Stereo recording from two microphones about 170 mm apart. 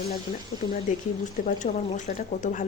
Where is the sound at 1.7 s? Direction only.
45° left (ahead or behind).